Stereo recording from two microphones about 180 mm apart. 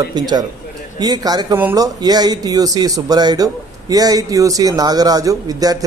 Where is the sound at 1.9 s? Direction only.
20° right (ahead or behind).